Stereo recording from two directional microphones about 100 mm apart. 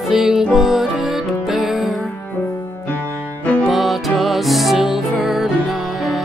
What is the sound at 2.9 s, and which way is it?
Music, 15° left (ahead or behind).